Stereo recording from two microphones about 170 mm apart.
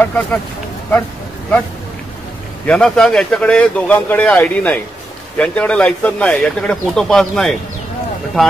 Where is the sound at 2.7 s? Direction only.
5° left (ahead or behind).